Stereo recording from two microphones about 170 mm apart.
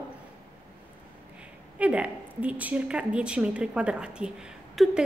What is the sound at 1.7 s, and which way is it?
A woman's voice, 10° right (ahead or behind).